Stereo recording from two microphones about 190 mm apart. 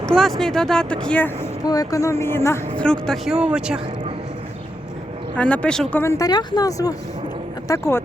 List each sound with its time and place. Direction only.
0.2 s speech: centre (ahead or behind)
1.6 s speech: 20° left (ahead or behind); by 3.8 s 5° right (ahead or behind)
5.4 s speech: 5° left (ahead or behind)